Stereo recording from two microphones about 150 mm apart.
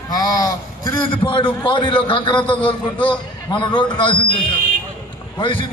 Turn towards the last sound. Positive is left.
turn(degrees=35)  # may be behind; listen again after turning